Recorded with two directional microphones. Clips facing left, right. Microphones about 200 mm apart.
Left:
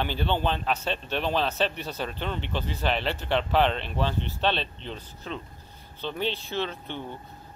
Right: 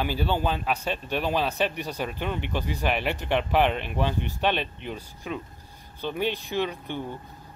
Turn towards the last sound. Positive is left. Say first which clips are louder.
# right 3 dB
turn(degrees=-15)  # may be behind; listen again after turning